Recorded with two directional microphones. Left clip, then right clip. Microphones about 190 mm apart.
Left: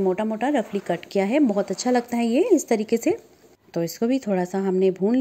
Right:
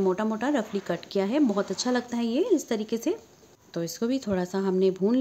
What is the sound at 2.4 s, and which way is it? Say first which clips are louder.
A woman's voice: left 5 dB; 25° left (ahead or behind).